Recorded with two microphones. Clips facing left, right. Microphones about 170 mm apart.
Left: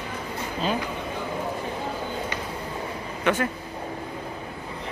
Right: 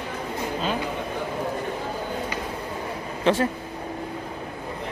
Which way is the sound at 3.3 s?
30° right (ahead or behind).